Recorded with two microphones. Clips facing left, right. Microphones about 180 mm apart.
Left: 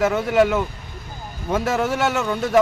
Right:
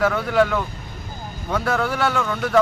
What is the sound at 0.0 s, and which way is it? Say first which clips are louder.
Speech: left 1 dB; 20° left (ahead or behind).